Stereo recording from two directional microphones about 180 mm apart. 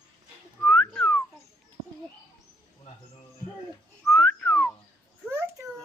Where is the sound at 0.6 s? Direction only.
5° left (ahead or behind).